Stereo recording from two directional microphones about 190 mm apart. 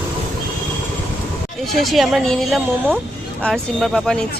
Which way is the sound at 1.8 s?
Centre (ahead or behind).